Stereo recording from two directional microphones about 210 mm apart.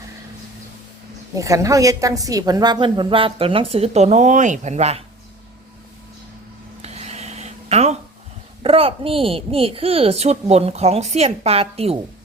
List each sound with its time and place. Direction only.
1.4 s a woman's voice: 15° right (ahead or behind); by 5.0 s 30° right (ahead or behind)
6.8 s a sound: 30° right (ahead or behind)
8.6 s a woman's voice: 25° right (ahead or behind)